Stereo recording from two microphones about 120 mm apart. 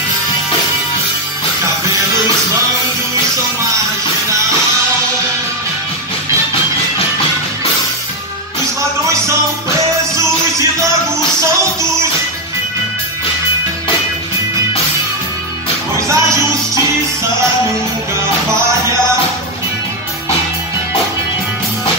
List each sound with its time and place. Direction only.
16.1 s music: 25° right (ahead or behind)